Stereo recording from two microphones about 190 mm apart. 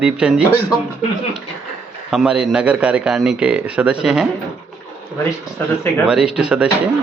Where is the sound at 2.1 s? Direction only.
5° right (ahead or behind).